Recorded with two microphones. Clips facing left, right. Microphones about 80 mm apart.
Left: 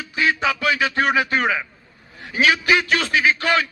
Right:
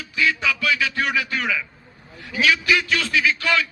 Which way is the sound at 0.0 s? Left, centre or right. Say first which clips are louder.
Left 2 dB; left.